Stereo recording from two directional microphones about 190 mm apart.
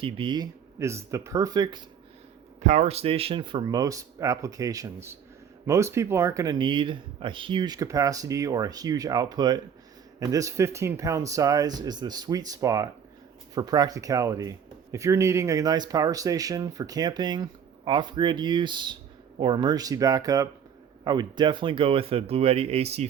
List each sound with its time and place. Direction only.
0.0 s speech: 25° right (ahead or behind)
2.6 s speech: 35° right (ahead or behind)